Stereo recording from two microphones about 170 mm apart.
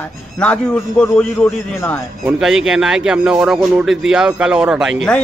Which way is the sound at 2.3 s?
5° right (ahead or behind).